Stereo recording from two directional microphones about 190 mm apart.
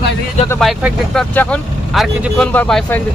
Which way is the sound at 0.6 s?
Centre (ahead or behind).